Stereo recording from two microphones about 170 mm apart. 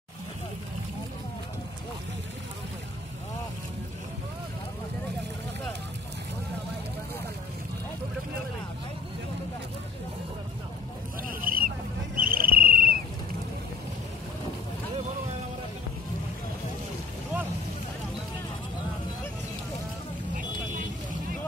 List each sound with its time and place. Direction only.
11.2 s vehicle: 55° right (ahead or behind)
12.2 s cricket: 55° right (ahead or behind)